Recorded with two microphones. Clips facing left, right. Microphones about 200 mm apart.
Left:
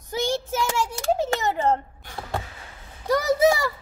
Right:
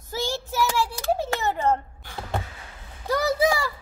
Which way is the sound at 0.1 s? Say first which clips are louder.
Left 3 dB; 20° left (ahead or behind).